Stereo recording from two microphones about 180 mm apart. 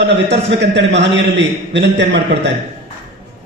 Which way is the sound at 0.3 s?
70° right (ahead or behind).